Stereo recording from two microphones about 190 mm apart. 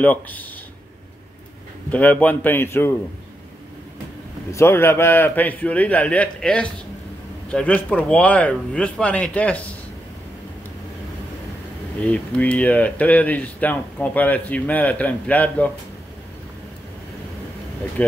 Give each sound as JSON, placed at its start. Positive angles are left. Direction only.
{"t": 0.0, "sound": "speech", "side_deg": 10}
{"t": 1.9, "sound": "speech", "side_deg": 10}
{"t": 4.5, "sound": "speech", "side_deg": 15}
{"t": 12.0, "sound": "speech", "side_deg": 5}